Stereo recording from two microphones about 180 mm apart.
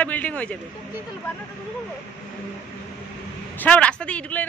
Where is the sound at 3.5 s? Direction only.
5° left (ahead or behind).